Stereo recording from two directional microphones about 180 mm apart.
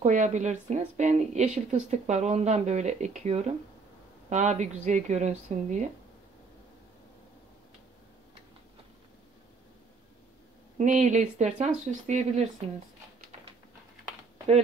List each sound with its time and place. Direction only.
0.0 s a woman's voice: 40° right (ahead or behind)
10.8 s a woman's voice: 40° right (ahead or behind)